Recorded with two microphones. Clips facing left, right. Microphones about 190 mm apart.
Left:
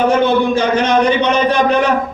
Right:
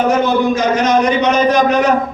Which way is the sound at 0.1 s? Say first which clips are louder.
Left 1 dB; 30° left (ahead or behind).